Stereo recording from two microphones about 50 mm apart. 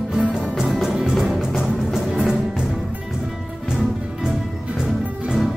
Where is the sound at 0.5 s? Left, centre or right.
Centre.